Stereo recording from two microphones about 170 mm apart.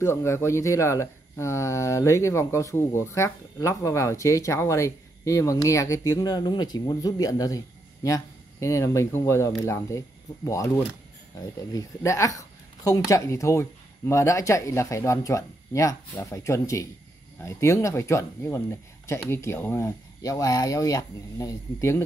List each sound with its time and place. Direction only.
0.0 s speech: 15° left (ahead or behind)